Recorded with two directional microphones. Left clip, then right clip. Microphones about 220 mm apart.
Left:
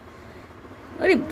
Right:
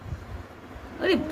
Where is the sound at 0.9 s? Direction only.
15° left (ahead or behind).